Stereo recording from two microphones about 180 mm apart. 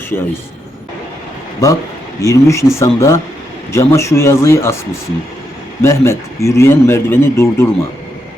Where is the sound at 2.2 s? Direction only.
15° left (ahead or behind).